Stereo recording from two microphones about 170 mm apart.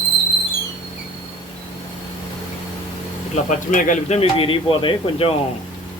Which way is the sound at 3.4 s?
45° left (ahead or behind).